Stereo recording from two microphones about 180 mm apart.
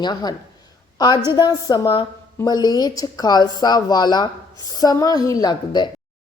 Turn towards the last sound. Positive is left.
turn(degrees=25)  # may be behind; listen again after turning